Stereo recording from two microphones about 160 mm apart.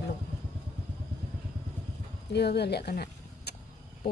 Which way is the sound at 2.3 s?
90° left.